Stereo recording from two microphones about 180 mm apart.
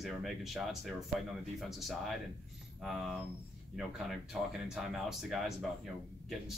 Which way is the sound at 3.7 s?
Centre (ahead or behind).